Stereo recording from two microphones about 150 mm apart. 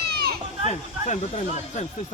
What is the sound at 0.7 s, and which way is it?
Speech, 50° left (ahead or behind).